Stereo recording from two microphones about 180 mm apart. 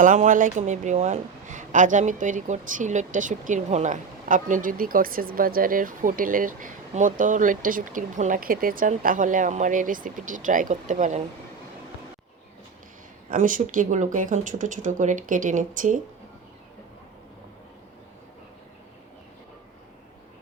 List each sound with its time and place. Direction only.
0.0 s a woman's voice: 45° right (ahead or behind)
13.3 s a woman's voice: 50° right (ahead or behind)